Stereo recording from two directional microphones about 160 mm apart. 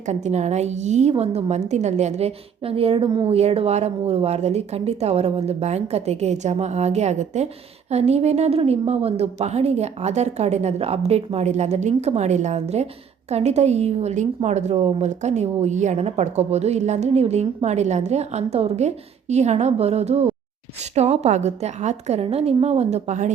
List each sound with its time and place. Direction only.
0.1 s a woman's voice: 45° right (ahead or behind)